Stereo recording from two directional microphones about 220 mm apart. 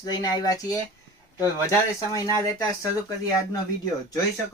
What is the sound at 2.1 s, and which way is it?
Speech, 15° left (ahead or behind).